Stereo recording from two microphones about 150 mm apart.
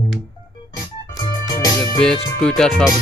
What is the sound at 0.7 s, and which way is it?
Organ, 25° left (ahead or behind).